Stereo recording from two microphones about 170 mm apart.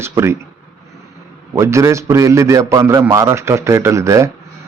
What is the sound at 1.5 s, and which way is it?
A man's voice, 15° right (ahead or behind).